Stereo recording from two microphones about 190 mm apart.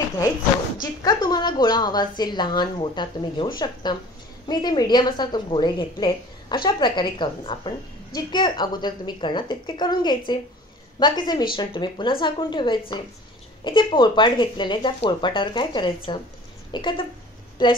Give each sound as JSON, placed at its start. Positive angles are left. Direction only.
{"t": 1.0, "sound": "a woman's voice", "side_deg": 20}